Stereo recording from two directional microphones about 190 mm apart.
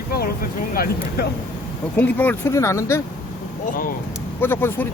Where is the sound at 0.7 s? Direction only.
50° left (ahead or behind).